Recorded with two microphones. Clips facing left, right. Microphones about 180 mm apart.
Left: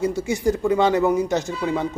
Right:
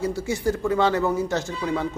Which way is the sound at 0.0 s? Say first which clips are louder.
Left 3 dB; 20° left (ahead or behind).